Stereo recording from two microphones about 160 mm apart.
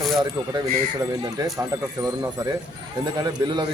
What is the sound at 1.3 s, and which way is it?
A man's voice, 20° right (ahead or behind).